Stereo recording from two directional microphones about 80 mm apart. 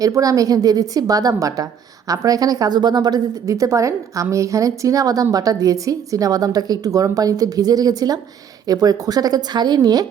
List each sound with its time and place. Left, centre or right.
0.0 s a woman's voice: right
3.4 s a woman's voice: right